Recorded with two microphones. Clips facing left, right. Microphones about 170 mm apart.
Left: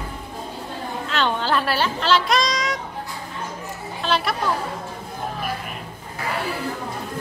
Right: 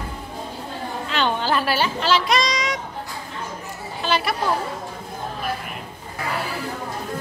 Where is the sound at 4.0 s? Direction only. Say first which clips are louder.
Even; centre (ahead or behind).